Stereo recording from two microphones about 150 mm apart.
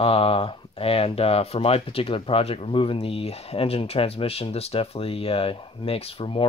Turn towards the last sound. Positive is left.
turn(degrees=35)  # may be behind; listen again after turning